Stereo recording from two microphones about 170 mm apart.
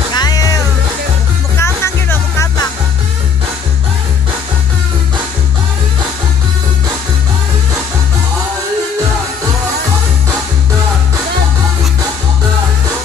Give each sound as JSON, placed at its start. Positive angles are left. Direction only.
{"t": 0.1, "sound": "music", "side_deg": 25}
{"t": 1.6, "sound": "music", "side_deg": 15}